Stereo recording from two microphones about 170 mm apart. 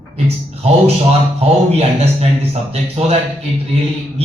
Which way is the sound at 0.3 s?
35° right (ahead or behind).